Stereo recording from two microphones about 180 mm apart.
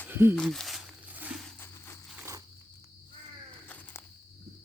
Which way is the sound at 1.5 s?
10° left (ahead or behind).